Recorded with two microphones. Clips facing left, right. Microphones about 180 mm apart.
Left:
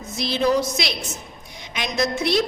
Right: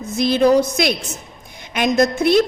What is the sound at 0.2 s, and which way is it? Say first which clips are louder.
A woman's voice: right 7 dB; 50° right (ahead or behind).